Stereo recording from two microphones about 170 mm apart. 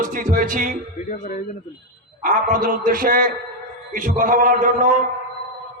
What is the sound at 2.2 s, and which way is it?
A man's voice, 50° right (ahead or behind).